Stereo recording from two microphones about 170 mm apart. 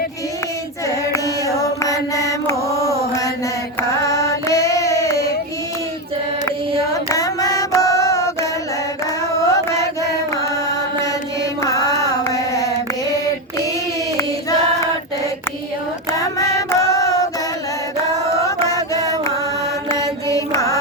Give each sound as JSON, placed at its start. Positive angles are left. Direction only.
{"t": 0.9, "sound": "mantra", "side_deg": 20}
{"t": 4.0, "sound": "carnatic music", "side_deg": 20}
{"t": 6.9, "sound": "music", "side_deg": 20}
{"t": 9.5, "sound": "chant", "side_deg": 20}
{"t": 11.6, "sound": "mantra", "side_deg": 20}
{"t": 16.1, "sound": "female singing", "side_deg": 20}
{"t": 18.4, "sound": "music", "side_deg": 20}
{"t": 19.9, "sound": "mantra", "side_deg": 20}